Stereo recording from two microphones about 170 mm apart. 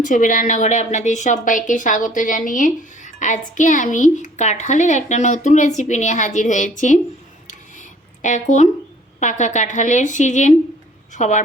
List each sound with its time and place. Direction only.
0.0 s a woman's voice: 50° left (ahead or behind)
7.4 s a sound: 45° left (ahead or behind)
9.2 s a woman's voice: 45° left (ahead or behind)